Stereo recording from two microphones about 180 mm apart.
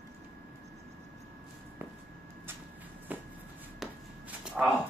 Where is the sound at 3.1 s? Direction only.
10° right (ahead or behind).